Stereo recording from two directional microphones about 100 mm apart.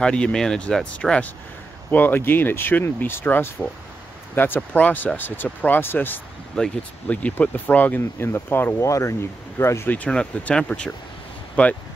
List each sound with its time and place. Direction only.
0.0 s speech: 10° left (ahead or behind)
4.6 s speech: 15° left (ahead or behind)